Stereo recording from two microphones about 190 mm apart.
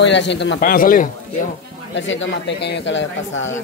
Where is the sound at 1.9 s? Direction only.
80° left.